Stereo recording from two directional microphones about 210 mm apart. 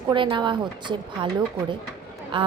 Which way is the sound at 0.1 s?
20° right (ahead or behind).